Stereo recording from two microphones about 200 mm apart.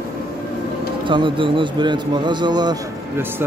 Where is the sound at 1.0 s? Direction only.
25° right (ahead or behind).